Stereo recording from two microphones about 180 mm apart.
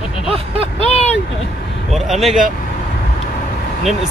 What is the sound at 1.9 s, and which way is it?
Speech, centre (ahead or behind).